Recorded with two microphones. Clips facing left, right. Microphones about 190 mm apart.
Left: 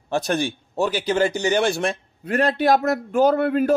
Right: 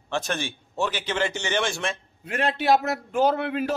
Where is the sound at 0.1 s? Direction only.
40° left (ahead or behind).